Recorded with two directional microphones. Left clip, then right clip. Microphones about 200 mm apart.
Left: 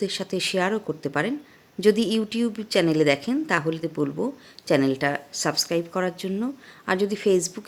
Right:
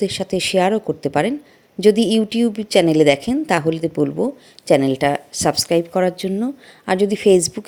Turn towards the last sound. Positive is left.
turn(degrees=-25)  # may be behind; listen again after turning